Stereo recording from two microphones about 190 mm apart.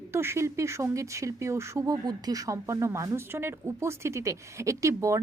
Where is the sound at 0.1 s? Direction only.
15° right (ahead or behind).